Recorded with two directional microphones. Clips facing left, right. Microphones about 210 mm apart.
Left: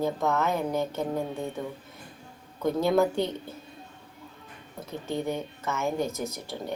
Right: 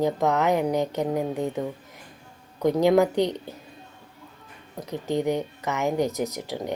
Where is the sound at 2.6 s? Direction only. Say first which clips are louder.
Right 4 dB; 15° right (ahead or behind).